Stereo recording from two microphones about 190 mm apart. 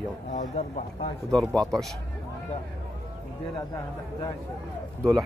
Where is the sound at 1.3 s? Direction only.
5° left (ahead or behind).